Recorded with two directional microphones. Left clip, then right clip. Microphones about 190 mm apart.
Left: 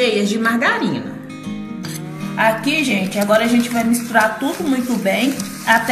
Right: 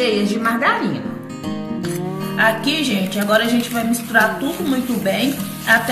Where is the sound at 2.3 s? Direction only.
10° left (ahead or behind).